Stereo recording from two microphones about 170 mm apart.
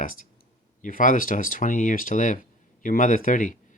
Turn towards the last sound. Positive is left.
turn(degrees=50)  # may be behind; listen again after turning